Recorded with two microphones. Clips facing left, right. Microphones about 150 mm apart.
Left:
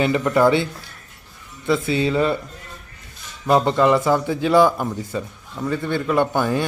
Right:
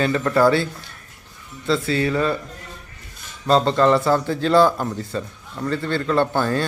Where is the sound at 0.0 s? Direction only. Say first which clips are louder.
Left 1 dB; 15° left (ahead or behind).